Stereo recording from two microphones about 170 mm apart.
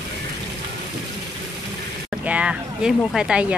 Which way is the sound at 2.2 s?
5° right (ahead or behind).